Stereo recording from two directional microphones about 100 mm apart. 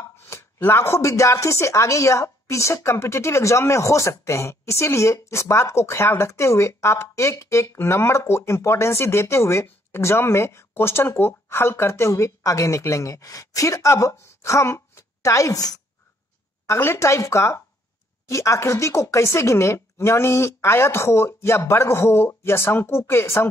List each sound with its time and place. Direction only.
0.2 s speech: 25° left (ahead or behind)
16.6 s speech: 25° left (ahead or behind)